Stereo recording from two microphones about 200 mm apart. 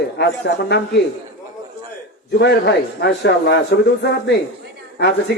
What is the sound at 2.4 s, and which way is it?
A man's voice, 55° left (ahead or behind).